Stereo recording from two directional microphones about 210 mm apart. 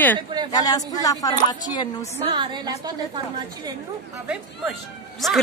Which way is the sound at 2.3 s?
20° right (ahead or behind).